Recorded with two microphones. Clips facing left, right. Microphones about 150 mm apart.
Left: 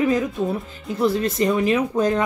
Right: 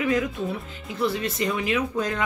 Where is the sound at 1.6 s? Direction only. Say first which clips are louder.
Left 6 dB; 35° left (ahead or behind).